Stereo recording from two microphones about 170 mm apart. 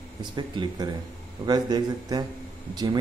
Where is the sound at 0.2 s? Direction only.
25° right (ahead or behind).